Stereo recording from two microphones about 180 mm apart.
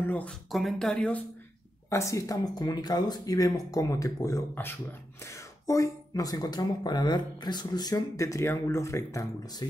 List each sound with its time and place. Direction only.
0.0 s speech: 10° left (ahead or behind)
1.9 s speech: 15° left (ahead or behind)